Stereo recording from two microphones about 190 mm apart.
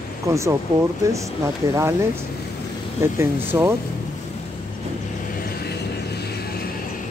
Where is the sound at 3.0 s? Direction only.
10° right (ahead or behind).